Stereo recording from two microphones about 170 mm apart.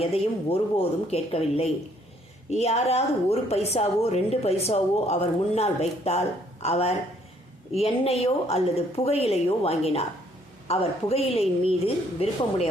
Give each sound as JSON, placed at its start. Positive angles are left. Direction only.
{"t": 0.0, "sound": "a woman's voice", "side_deg": 35}